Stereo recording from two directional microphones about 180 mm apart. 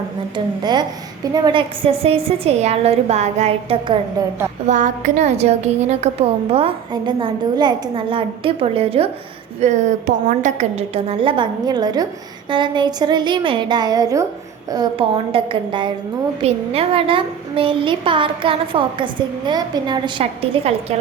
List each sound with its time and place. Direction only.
0.3 s a woman's voice: 25° right (ahead or behind)